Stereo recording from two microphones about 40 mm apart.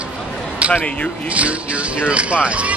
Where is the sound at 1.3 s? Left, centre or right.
Right.